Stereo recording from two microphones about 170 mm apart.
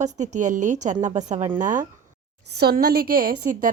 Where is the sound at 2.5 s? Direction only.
65° right (ahead or behind).